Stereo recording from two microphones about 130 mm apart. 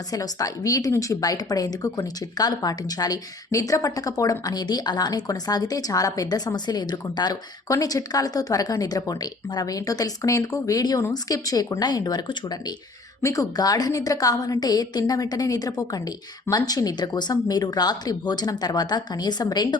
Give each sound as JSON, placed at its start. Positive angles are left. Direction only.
{"t": 0.1, "sound": "a woman's voice", "side_deg": 25}